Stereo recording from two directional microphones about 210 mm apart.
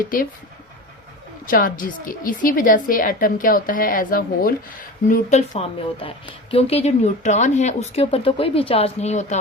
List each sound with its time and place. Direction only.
1.5 s a woman's voice: 40° left (ahead or behind)